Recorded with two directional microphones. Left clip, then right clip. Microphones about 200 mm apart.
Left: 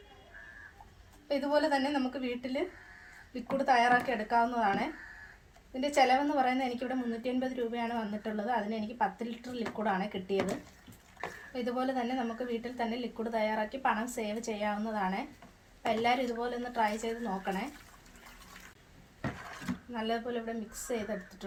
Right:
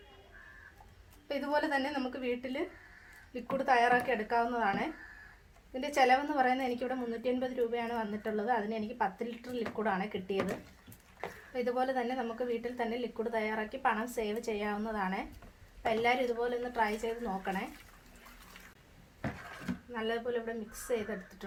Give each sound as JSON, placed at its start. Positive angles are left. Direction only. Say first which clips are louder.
{"t": 1.3, "sound": "a woman's voice", "louder": "left 3 dB", "side_deg": -30}
{"t": 11.5, "sound": "a woman's voice", "louder": "right 2 dB", "side_deg": -30}
{"t": 19.9, "sound": "a woman's voice", "louder": "even", "side_deg": -25}